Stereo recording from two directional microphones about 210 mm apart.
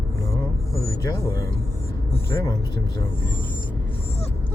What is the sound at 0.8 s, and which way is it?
A man's voice, 15° left (ahead or behind).